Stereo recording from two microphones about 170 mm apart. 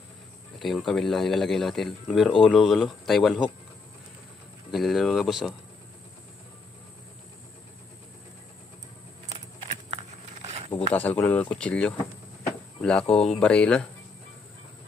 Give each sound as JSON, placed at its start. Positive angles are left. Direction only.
{"t": 0.6, "sound": "speech", "side_deg": 0}
{"t": 4.7, "sound": "speech", "side_deg": 0}
{"t": 9.3, "sound": "a sound", "side_deg": -40}
{"t": 10.9, "sound": "speech", "side_deg": 10}